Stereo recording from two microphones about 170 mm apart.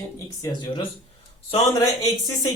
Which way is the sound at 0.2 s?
20° left (ahead or behind).